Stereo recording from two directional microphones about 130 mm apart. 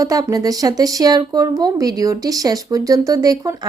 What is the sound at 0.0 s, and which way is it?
A woman's voice, 25° right (ahead or behind).